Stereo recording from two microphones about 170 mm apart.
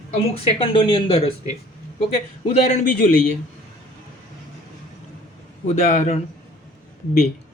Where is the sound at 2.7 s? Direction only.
50° left (ahead or behind).